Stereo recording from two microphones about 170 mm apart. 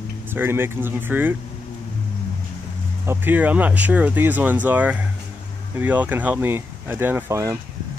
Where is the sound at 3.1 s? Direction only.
10° right (ahead or behind).